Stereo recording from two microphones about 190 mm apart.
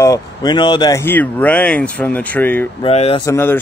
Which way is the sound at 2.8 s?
30° left (ahead or behind).